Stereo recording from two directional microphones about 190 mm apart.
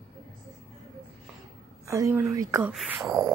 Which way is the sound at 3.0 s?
20° right (ahead or behind).